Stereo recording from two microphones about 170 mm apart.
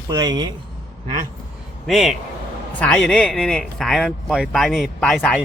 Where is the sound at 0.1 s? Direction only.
25° right (ahead or behind).